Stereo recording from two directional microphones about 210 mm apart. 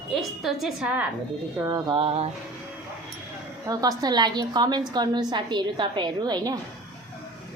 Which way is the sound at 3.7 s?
15° right (ahead or behind).